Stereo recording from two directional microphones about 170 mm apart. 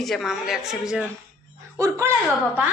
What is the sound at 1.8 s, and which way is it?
Speech, 15° right (ahead or behind).